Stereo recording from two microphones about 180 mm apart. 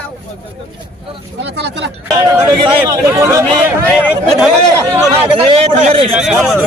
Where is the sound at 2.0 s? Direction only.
20° right (ahead or behind).